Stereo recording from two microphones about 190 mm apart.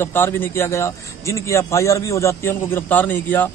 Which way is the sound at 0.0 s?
10° left (ahead or behind).